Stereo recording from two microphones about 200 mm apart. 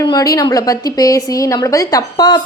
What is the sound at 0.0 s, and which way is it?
A woman's voice, 20° left (ahead or behind).